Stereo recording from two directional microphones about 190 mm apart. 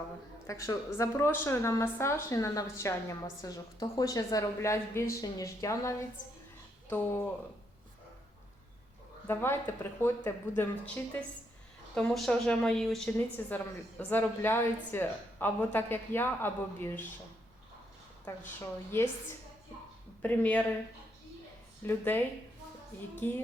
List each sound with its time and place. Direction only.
0.4 s a woman's voice: 20° left (ahead or behind)
9.2 s a woman's voice: 10° left (ahead or behind)
20.2 s a woman's voice: 10° left (ahead or behind)
21.8 s a woman's voice: 10° left (ahead or behind)
23.2 s a woman's voice: 10° left (ahead or behind)